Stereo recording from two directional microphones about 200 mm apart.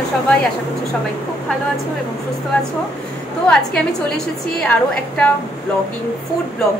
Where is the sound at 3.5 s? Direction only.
5° left (ahead or behind).